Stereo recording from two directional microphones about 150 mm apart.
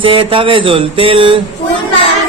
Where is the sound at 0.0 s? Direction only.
35° right (ahead or behind).